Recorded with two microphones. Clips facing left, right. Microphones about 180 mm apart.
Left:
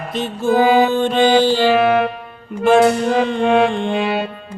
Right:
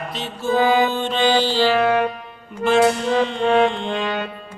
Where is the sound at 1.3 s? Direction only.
50° left (ahead or behind).